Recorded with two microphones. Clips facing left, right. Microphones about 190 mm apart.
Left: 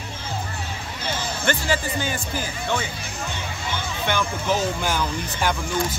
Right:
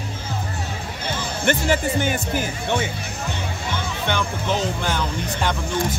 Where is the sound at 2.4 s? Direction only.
20° right (ahead or behind).